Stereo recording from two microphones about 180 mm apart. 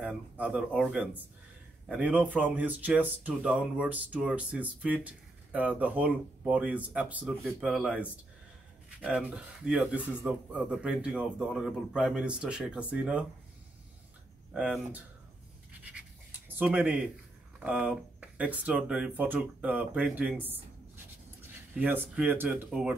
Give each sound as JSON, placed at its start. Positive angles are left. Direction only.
{"t": 0.0, "sound": "speech", "side_deg": -5}
{"t": 14.5, "sound": "speech", "side_deg": -5}
{"t": 15.8, "sound": "scratch", "side_deg": -10}
{"t": 17.6, "sound": "speech", "side_deg": -5}